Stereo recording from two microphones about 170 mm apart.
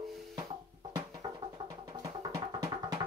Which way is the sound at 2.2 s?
20° right (ahead or behind).